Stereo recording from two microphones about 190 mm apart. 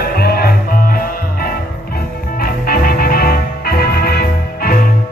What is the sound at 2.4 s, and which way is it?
Music, 50° left (ahead or behind).